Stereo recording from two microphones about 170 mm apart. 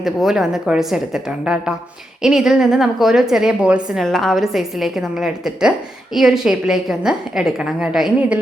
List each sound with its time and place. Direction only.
0.0 s a woman's voice: centre (ahead or behind)